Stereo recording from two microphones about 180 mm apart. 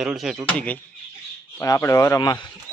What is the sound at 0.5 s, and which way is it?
Speech, 10° left (ahead or behind).